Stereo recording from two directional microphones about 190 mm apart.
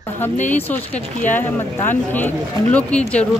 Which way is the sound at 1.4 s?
10° left (ahead or behind).